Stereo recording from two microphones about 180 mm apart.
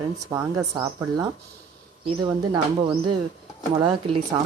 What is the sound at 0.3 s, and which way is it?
Speech, 20° right (ahead or behind).